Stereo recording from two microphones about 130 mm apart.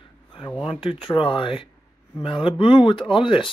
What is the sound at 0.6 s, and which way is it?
Speech, 45° left (ahead or behind).